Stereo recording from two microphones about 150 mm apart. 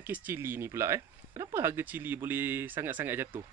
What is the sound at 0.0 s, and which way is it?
Speech, 10° right (ahead or behind).